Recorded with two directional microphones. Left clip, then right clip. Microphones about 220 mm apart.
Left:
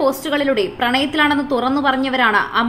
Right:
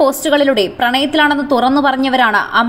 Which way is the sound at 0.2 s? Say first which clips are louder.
Right 6 dB; 20° right (ahead or behind).